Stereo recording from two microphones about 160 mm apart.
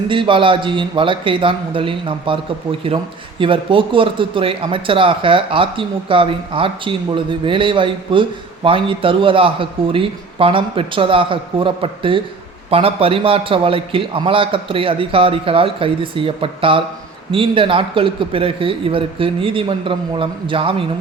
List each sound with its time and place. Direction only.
0.1 s speech: 30° right (ahead or behind)